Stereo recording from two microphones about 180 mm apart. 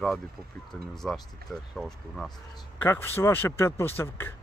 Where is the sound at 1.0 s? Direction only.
5° left (ahead or behind).